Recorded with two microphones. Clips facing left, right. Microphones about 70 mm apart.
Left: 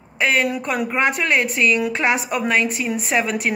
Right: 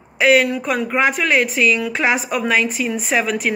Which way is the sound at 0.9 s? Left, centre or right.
Centre.